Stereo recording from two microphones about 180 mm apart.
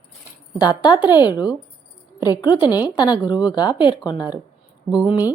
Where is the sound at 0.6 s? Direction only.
25° left (ahead or behind).